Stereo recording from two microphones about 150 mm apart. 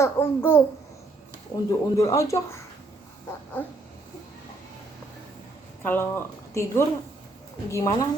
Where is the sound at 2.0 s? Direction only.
20° left (ahead or behind).